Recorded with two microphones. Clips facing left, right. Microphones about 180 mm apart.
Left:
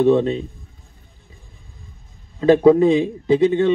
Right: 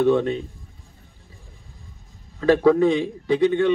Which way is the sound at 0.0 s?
25° left (ahead or behind).